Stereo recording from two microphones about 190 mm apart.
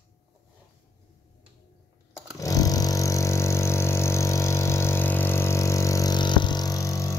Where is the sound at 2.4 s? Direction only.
20° left (ahead or behind).